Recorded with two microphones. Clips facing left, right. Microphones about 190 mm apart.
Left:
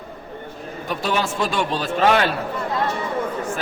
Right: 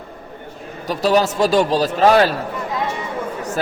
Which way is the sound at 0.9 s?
40° right (ahead or behind).